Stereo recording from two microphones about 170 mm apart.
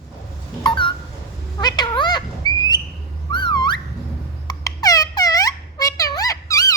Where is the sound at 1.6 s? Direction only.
25° left (ahead or behind).